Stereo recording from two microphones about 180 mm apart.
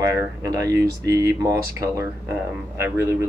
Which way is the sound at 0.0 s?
15° right (ahead or behind).